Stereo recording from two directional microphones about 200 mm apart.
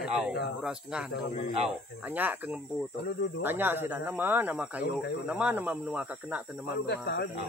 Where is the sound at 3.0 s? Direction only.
55° left (ahead or behind).